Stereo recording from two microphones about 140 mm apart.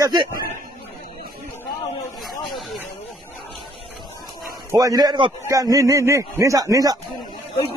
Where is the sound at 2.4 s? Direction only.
Centre (ahead or behind).